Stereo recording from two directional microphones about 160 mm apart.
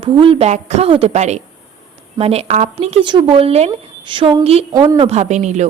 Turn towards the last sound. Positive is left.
turn(degrees=-45)  # may be behind; listen again after turning